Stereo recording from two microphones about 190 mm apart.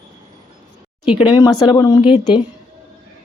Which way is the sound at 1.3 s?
20° left (ahead or behind).